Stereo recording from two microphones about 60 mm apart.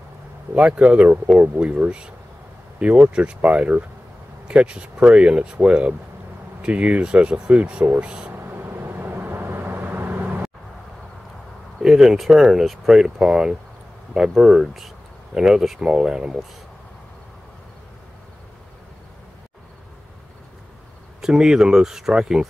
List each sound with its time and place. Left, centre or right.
0.6 s speech: right
8.3 s vehicle: right
11.8 s speech: centre
21.2 s speech: centre